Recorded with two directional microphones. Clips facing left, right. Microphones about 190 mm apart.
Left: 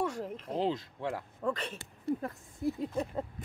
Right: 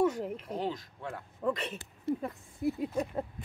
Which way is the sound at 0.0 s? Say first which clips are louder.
Right 5 dB; 10° right (ahead or behind).